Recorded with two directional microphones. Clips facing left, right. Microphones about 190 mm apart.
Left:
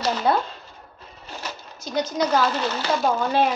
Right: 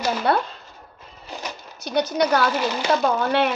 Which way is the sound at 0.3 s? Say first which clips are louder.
Right 1 dB; 70° right (ahead or behind).